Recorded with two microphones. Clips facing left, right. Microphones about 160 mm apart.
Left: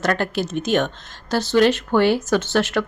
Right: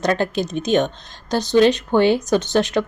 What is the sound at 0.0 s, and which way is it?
Speech, 20° right (ahead or behind).